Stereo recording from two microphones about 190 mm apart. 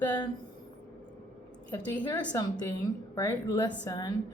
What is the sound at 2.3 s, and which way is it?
A woman's voice, 20° left (ahead or behind).